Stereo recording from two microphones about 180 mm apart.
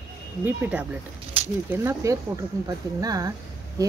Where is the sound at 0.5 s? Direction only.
10° right (ahead or behind).